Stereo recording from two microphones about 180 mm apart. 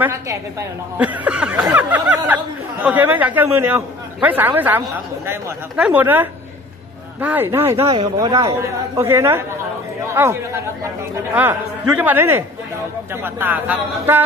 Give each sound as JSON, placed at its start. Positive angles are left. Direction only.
{"t": 0.0, "sound": "a woman's voice", "side_deg": -15}
{"t": 8.2, "sound": "speech", "side_deg": -25}
{"t": 8.5, "sound": "a woman's voice", "side_deg": -15}
{"t": 12.0, "sound": "a woman's voice", "side_deg": -10}